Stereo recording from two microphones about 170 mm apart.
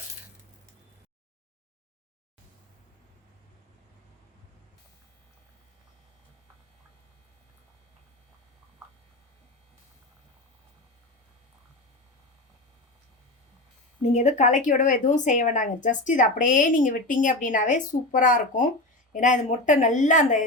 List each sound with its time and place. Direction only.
14.0 s speech: 45° left (ahead or behind)